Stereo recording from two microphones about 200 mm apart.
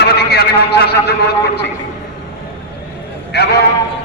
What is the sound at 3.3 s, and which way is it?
Speech, 55° left (ahead or behind).